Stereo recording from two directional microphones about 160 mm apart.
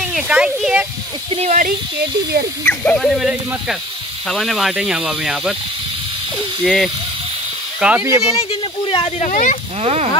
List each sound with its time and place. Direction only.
0.0 s a child's voice: 5° right (ahead or behind)
1.3 s speech: 45° right (ahead or behind)
2.6 s speech: 10° left (ahead or behind)
6.6 s speech: centre (ahead or behind)
7.8 s speech: 10° right (ahead or behind)
8.4 s speech: 35° left (ahead or behind)
9.3 s speech: 55° left (ahead or behind)